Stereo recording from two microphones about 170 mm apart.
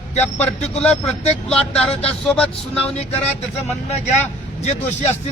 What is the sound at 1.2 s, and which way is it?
Speech, 40° left (ahead or behind).